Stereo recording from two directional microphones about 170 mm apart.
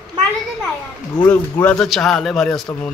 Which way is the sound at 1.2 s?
10° left (ahead or behind).